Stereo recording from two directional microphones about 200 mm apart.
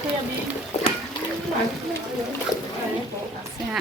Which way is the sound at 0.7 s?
30° left (ahead or behind).